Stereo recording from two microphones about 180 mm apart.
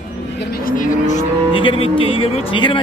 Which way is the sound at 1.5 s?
30° left (ahead or behind).